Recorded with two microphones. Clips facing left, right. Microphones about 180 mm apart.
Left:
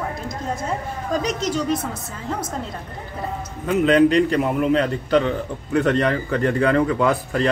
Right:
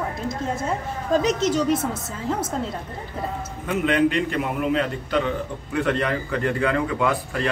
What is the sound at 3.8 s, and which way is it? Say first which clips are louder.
A man's voice: left 5 dB; 40° left (ahead or behind).